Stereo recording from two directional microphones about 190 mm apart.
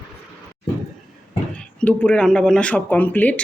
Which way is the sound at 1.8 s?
5° left (ahead or behind).